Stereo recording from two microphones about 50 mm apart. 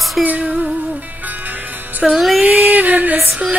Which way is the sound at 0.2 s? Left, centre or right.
Right.